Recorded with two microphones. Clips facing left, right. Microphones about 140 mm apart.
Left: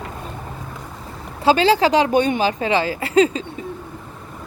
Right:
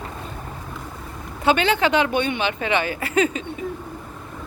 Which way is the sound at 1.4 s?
30° left (ahead or behind).